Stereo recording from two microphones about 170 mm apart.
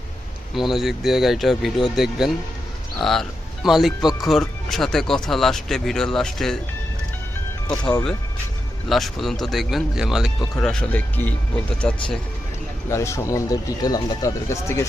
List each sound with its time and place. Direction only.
0.5 s speech: centre (ahead or behind)
8.9 s speech: centre (ahead or behind)
12.9 s speech: 15° left (ahead or behind)